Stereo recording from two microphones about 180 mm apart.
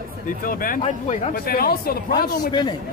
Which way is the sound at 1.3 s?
55° left (ahead or behind).